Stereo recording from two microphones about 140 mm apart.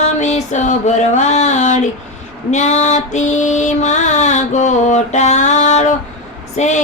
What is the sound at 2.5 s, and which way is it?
Mantra, 55° left (ahead or behind).